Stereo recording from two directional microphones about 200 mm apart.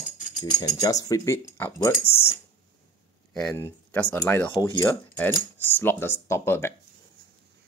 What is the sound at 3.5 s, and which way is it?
Speech, 10° left (ahead or behind).